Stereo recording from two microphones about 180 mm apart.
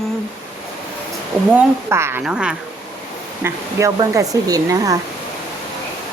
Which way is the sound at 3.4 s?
15° right (ahead or behind).